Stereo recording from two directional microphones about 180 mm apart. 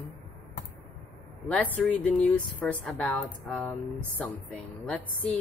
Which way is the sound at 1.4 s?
10° left (ahead or behind).